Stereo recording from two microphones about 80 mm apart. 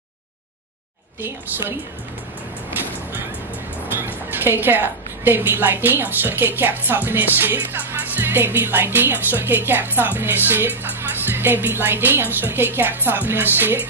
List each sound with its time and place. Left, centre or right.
4.0 s a woman's voice: right